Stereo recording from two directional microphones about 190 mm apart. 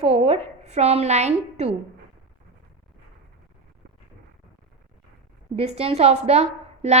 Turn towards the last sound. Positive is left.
turn(degrees=-35)  # may be behind; listen again after turning